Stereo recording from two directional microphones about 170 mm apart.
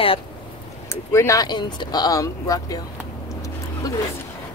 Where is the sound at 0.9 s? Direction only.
15° left (ahead or behind).